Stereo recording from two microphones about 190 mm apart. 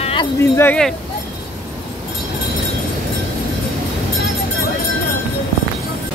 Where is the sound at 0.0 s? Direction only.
25° left (ahead or behind).